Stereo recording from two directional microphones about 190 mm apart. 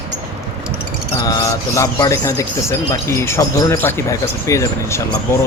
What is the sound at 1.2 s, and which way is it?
Speech, 20° left (ahead or behind).